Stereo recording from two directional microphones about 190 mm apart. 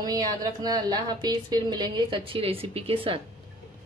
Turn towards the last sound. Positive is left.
turn(degrees=-30)  # may be behind; listen again after turning